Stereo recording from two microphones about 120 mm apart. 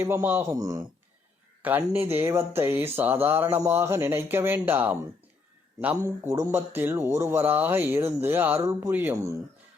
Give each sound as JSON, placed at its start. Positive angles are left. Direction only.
{"t": 0.0, "sound": "speech", "side_deg": -20}
{"t": 0.5, "sound": "speech", "side_deg": -30}
{"t": 1.6, "sound": "speech", "side_deg": -15}
{"t": 6.1, "sound": "speech", "side_deg": -25}